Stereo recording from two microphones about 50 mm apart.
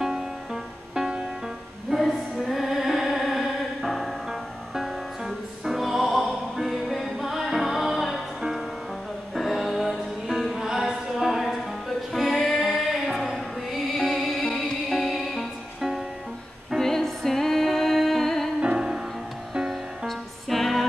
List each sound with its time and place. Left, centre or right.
0.9 s music: centre
18.6 s music: centre
20.1 s music: centre